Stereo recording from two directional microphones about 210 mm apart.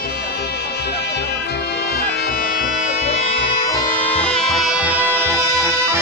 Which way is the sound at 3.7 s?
5° left (ahead or behind).